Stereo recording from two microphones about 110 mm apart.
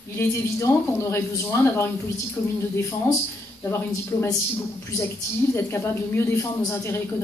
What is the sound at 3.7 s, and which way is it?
Speech, 25° left (ahead or behind).